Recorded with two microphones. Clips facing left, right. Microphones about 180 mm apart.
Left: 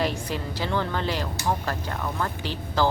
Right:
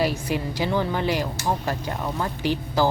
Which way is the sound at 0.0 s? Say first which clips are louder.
Right 3 dB; 10° right (ahead or behind).